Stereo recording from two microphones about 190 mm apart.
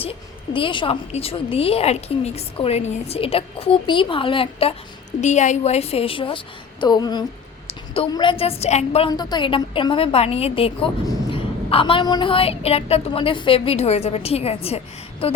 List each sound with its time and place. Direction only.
0.0 s a woman's voice: 30° left (ahead or behind)
5.2 s a woman's voice: 40° left (ahead or behind)
9.0 s a woman's voice: 20° left (ahead or behind)